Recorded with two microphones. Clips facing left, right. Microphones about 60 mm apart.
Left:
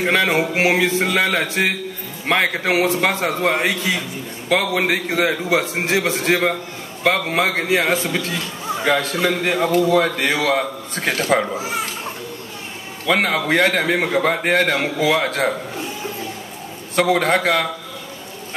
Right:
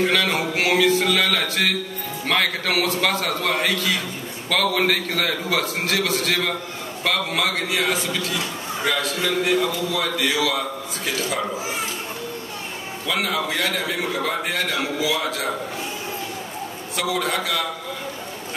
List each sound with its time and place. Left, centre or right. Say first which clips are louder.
0.0 s a man's voice: left 3 dB; left
13.1 s a man's voice: left 6 dB; left
13.9 s a man's voice: left 6 dB; left
16.9 s a man's voice: left 7 dB; left